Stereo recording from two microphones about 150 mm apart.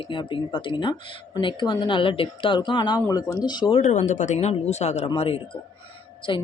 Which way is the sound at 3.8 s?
55° left (ahead or behind).